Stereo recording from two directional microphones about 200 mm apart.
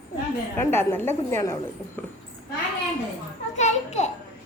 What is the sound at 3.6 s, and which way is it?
Speech, 35° left (ahead or behind).